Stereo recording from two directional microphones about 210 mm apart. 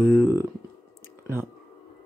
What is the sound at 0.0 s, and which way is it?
Speech, 5° right (ahead or behind).